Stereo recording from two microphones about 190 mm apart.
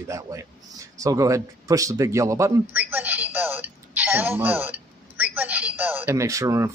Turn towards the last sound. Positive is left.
turn(degrees=-15)  # may be behind; listen again after turning